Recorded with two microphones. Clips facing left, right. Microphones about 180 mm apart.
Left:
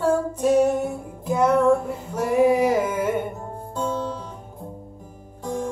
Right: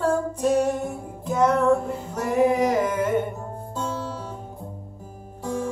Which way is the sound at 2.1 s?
10° left (ahead or behind).